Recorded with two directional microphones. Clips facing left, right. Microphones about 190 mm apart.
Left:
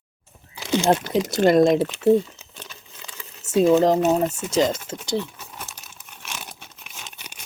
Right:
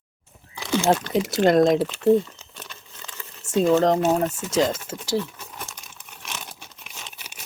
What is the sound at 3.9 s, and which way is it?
Speech, centre (ahead or behind).